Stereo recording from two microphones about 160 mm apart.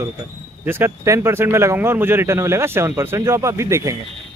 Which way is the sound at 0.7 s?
15° right (ahead or behind).